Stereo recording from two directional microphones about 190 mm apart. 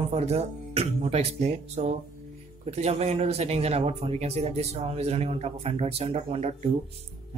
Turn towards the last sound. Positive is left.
turn(degrees=-35)  # may be behind; listen again after turning